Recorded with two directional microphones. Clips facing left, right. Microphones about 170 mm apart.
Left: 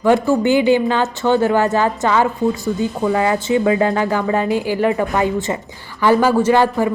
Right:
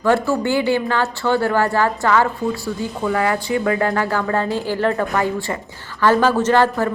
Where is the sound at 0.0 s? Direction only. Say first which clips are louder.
Left 3 dB; 15° left (ahead or behind).